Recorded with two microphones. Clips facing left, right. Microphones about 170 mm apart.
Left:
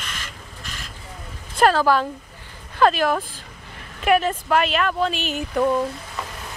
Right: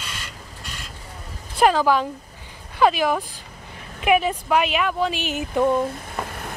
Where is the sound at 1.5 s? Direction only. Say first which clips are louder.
Even; 15° right (ahead or behind).